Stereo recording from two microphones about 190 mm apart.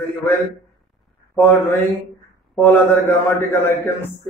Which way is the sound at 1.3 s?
10° left (ahead or behind).